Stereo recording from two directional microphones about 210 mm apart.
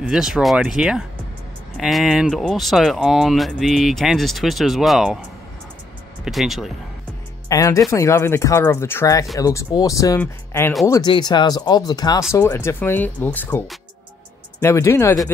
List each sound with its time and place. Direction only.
0.0 s speech: 5° right (ahead or behind)
6.2 s speech: centre (ahead or behind)
7.4 s speech: 15° left (ahead or behind)